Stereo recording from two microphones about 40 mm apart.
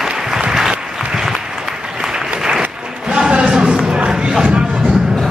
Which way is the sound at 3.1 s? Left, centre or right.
Right.